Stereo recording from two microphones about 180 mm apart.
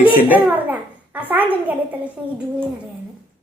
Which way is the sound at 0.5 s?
10° right (ahead or behind).